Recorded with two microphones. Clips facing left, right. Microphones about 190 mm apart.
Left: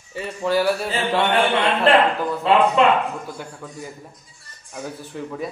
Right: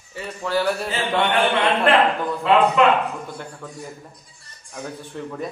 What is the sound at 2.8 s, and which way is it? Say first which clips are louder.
Speech: even; 30° left (ahead or behind).